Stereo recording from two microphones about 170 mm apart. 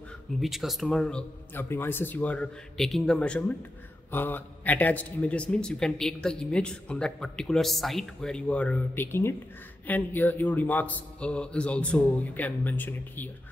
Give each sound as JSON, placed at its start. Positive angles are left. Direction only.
{"t": 0.4, "sound": "a man's voice", "side_deg": 0}